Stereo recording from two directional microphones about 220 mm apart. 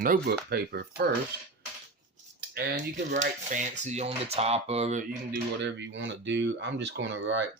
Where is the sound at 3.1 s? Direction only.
35° right (ahead or behind); by 7.4 s 55° right (ahead or behind).